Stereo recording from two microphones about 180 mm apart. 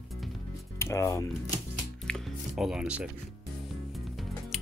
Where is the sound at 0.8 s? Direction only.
15° left (ahead or behind).